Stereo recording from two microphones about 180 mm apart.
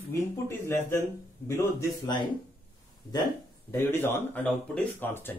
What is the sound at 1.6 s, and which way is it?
Speech, 25° left (ahead or behind).